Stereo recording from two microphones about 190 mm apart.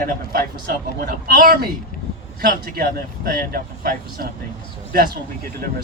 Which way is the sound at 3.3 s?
50° right (ahead or behind).